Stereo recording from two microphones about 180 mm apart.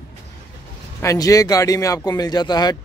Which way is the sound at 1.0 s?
20° left (ahead or behind).